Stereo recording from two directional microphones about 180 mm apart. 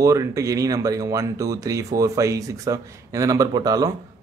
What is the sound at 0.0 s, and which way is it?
Speech, 20° right (ahead or behind).